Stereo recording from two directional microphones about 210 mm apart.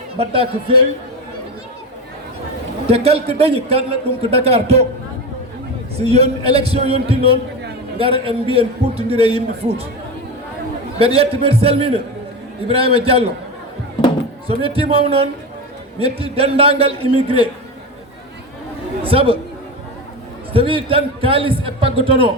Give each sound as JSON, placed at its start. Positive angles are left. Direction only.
{"t": 0.2, "sound": "a man's voice", "side_deg": -25}
{"t": 2.8, "sound": "a man's voice", "side_deg": -30}
{"t": 6.0, "sound": "a man's voice", "side_deg": -30}
{"t": 10.9, "sound": "a man's voice", "side_deg": -30}
{"t": 13.1, "sound": "a man's voice", "side_deg": -30}
{"t": 14.4, "sound": "a man's voice", "side_deg": -25}
{"t": 19.0, "sound": "speech", "side_deg": -25}
{"t": 20.5, "sound": "a man's voice", "side_deg": -25}